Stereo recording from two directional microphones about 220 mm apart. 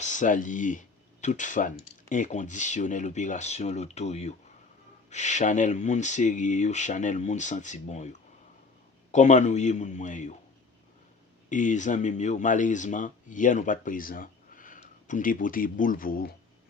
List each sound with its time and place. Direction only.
0.0 s speech: 35° left (ahead or behind)
9.1 s speech: 30° left (ahead or behind)
11.4 s speech: 35° left (ahead or behind)